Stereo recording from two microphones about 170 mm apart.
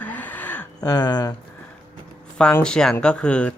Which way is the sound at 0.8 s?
25° left (ahead or behind).